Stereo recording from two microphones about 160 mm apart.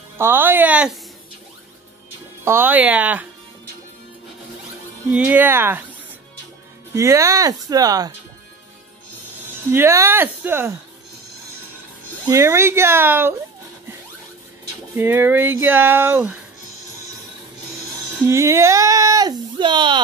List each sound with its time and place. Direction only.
0.2 s speech: 15° right (ahead or behind)
2.4 s speech: 15° right (ahead or behind)
5.1 s speech: 10° right (ahead or behind)
6.9 s speech: 20° right (ahead or behind)
9.7 s speech: 15° right (ahead or behind)
12.3 s speech: 15° right (ahead or behind)
15.0 s speech: 15° right (ahead or behind)
18.2 s speech: 15° right (ahead or behind)